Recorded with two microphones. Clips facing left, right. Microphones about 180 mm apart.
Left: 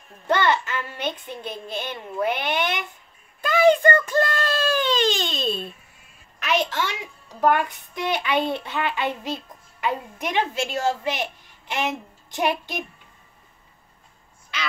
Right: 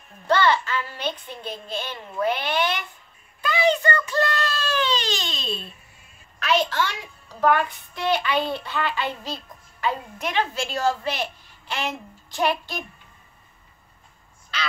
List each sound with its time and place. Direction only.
0.3 s a sound: 15° left (ahead or behind)
1.0 s a child's voice: 15° left (ahead or behind)
3.3 s a child's voice: 50° left (ahead or behind)
6.4 s a woman's voice: 20° left (ahead or behind)